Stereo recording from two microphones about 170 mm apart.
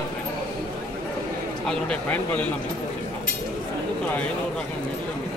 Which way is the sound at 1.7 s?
5° left (ahead or behind).